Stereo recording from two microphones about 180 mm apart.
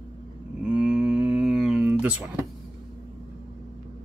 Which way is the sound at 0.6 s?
5° right (ahead or behind).